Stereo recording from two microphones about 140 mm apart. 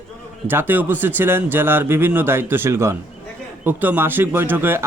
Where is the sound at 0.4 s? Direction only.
15° right (ahead or behind).